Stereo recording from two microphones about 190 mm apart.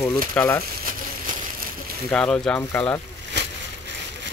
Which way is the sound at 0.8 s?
45° right (ahead or behind).